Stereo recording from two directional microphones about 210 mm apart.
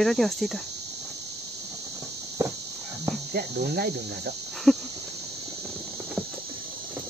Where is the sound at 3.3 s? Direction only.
50° right (ahead or behind).